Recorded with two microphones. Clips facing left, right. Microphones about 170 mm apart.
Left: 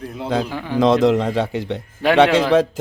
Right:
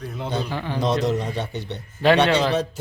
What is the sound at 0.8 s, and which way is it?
A man's voice, 90° left.